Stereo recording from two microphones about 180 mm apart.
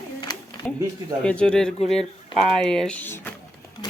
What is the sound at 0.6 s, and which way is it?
Speech, 5° left (ahead or behind).